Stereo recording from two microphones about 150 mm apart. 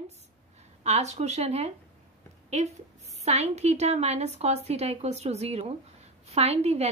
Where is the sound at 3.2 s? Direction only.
45° right (ahead or behind).